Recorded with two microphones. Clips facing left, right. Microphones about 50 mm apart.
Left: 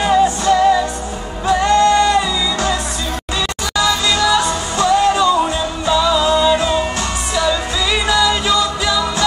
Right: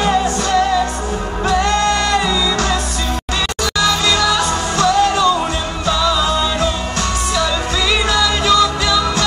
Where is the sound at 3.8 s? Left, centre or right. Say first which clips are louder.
Even; centre.